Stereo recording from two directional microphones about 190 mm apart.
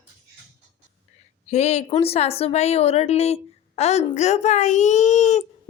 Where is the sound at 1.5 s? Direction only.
35° left (ahead or behind).